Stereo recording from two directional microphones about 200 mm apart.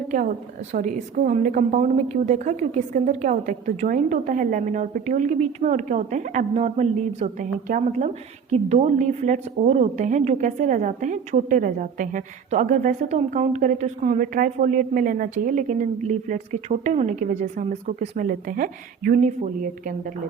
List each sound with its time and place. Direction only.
0.7 s a woman's voice: 40° right (ahead or behind)